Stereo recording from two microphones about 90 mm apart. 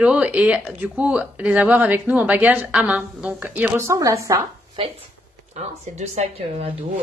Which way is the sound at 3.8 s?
35° right (ahead or behind).